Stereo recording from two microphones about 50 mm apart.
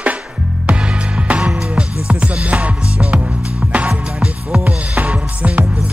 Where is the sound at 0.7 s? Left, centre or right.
Right.